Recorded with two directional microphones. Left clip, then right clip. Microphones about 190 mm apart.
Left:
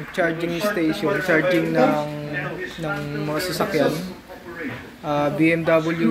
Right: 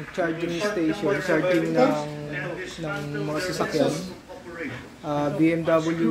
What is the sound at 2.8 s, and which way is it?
Speech, centre (ahead or behind).